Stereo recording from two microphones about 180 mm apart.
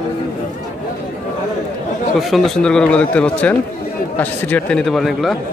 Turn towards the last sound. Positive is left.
turn(degrees=0)  # may be behind; listen again after turning